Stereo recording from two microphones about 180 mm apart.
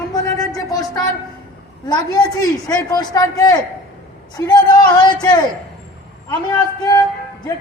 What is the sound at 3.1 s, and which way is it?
Speech, 20° left (ahead or behind).